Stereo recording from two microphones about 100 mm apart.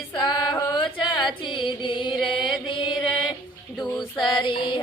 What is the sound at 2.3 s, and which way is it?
Chant, 55° left (ahead or behind).